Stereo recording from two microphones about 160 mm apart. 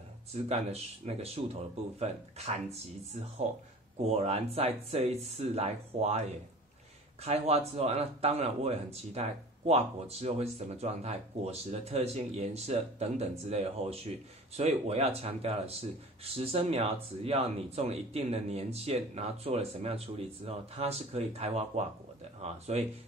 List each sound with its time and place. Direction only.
0.3 s speech: 40° right (ahead or behind)
7.2 s speech: 40° right (ahead or behind)